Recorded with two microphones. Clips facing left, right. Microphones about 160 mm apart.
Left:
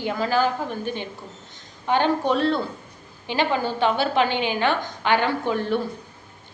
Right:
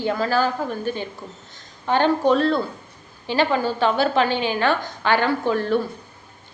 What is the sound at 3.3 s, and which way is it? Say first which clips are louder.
A woman's voice: right 3 dB; 15° left (ahead or behind).